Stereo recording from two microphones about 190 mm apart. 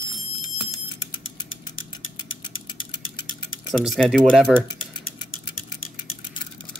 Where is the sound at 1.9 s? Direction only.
25° left (ahead or behind).